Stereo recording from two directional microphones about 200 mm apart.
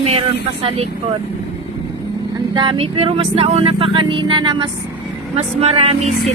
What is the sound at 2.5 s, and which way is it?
Speech, 25° right (ahead or behind).